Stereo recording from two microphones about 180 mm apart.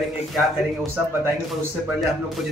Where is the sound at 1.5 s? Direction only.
Centre (ahead or behind).